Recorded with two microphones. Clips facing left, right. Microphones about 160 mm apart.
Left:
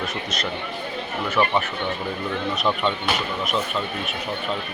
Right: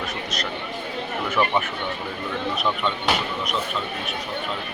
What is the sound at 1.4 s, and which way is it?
Speech, 20° left (ahead or behind).